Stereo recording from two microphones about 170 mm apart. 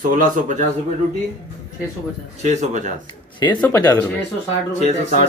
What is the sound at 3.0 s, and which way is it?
Speech, 25° left (ahead or behind).